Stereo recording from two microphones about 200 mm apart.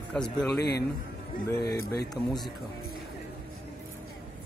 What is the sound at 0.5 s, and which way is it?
Speech, 55° left (ahead or behind).